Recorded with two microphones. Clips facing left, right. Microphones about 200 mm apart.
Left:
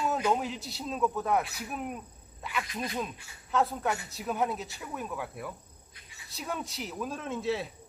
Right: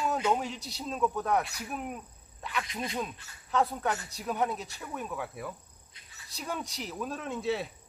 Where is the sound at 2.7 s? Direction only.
20° right (ahead or behind).